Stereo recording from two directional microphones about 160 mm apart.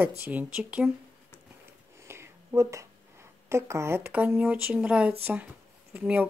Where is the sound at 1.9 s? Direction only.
15° right (ahead or behind).